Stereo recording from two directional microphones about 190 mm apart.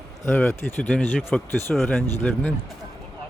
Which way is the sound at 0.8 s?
Centre (ahead or behind).